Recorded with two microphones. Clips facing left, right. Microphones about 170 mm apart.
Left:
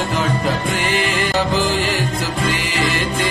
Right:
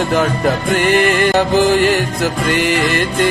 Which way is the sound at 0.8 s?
55° right (ahead or behind).